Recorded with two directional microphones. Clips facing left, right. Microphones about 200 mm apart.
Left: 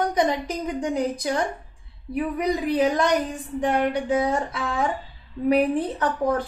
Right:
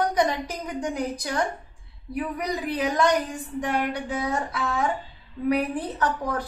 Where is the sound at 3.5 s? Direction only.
25° left (ahead or behind).